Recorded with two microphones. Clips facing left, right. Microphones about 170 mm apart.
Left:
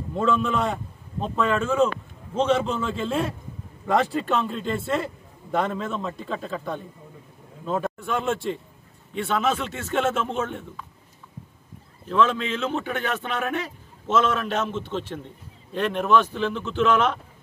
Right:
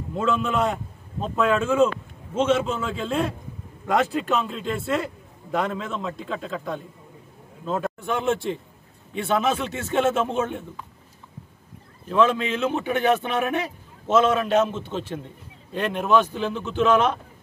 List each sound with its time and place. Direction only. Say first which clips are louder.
0.1 s a man's voice: left 1 dB; centre (ahead or behind)
8.0 s a man's voice: right 2 dB; 20° right (ahead or behind)
12.1 s a man's voice: right 2 dB; 10° right (ahead or behind)